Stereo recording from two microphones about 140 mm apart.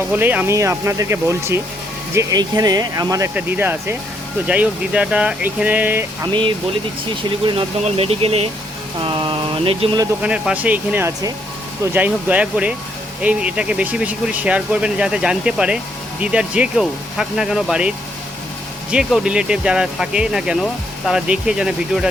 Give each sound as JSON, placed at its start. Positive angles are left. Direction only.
{"t": 0.1, "sound": "speech", "side_deg": -10}
{"t": 3.3, "sound": "speech", "side_deg": -15}
{"t": 7.3, "sound": "speech", "side_deg": -35}
{"t": 10.2, "sound": "speech", "side_deg": -5}